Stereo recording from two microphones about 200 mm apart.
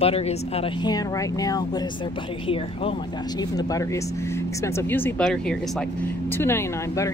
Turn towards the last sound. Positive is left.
turn(degrees=15)  # may be behind; listen again after turning